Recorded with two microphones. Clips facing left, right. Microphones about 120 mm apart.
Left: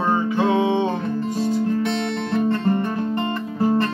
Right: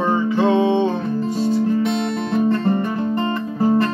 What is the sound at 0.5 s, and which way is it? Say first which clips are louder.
Music: right 3 dB; 15° left (ahead or behind).